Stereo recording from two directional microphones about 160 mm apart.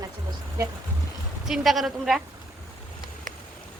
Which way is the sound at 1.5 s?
Centre (ahead or behind).